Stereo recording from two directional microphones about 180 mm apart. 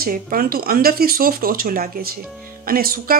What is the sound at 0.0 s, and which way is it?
Speech, 55° right (ahead or behind).